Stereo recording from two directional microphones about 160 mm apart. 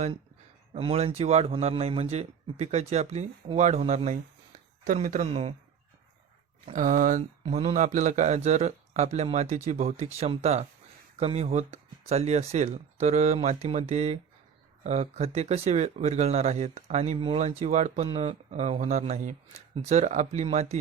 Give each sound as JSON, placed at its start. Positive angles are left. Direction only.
{"t": 0.7, "sound": "a man's voice", "side_deg": -40}
{"t": 6.7, "sound": "speech", "side_deg": -50}
{"t": 7.4, "sound": "a man's voice", "side_deg": -40}